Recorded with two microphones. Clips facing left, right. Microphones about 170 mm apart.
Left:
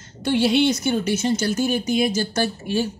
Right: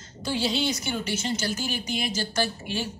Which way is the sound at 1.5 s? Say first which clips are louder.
Left 9 dB; 50° left (ahead or behind).